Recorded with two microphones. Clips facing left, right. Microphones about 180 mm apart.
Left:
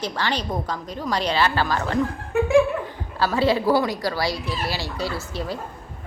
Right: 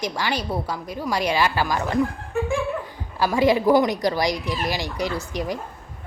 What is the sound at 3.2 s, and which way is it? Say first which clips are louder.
A woman's voice: right 2 dB; 15° right (ahead or behind).